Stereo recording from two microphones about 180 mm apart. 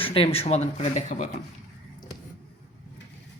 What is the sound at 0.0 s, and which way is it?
Speech, 30° left (ahead or behind).